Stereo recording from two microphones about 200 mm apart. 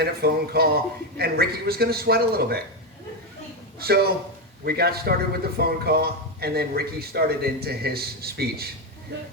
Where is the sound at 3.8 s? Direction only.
50° right (ahead or behind).